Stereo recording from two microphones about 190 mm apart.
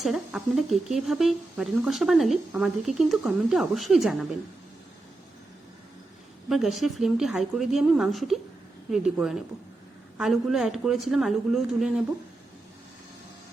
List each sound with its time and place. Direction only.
0.0 s speech: 5° right (ahead or behind)
6.5 s speech: centre (ahead or behind)